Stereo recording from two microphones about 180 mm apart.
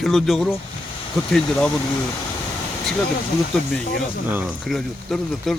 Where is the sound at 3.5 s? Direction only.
5° left (ahead or behind).